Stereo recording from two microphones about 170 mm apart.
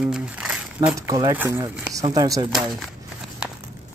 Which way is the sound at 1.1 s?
25° right (ahead or behind).